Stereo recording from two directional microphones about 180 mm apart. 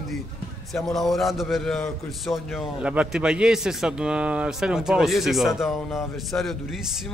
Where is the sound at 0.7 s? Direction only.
Centre (ahead or behind).